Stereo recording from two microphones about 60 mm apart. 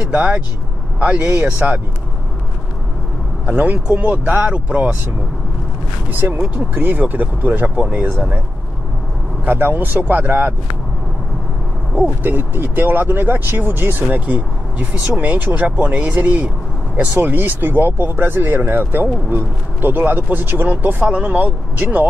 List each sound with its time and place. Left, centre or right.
0.1 s speech: centre
3.4 s speech: right
6.1 s speech: right
7.9 s speech: right
9.4 s speech: right
12.2 s speech: right